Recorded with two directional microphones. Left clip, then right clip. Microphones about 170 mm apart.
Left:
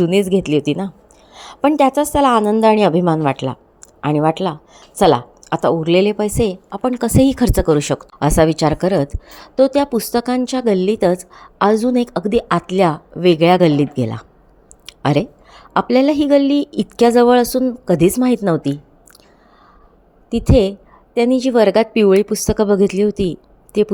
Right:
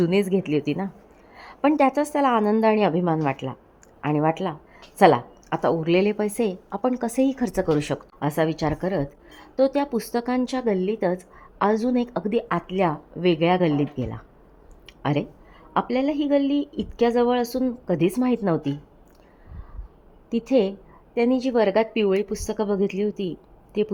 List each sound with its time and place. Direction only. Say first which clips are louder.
0.0 s a woman's voice: left 7 dB; 20° left (ahead or behind)
20.3 s a woman's voice: left 7 dB; 15° left (ahead or behind)